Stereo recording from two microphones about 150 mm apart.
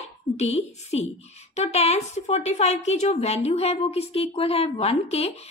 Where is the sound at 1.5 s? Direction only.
45° left (ahead or behind).